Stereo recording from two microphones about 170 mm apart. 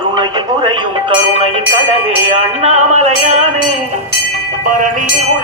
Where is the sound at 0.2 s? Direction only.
30° right (ahead or behind).